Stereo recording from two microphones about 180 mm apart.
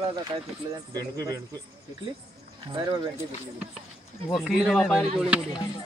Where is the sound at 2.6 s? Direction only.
25° right (ahead or behind).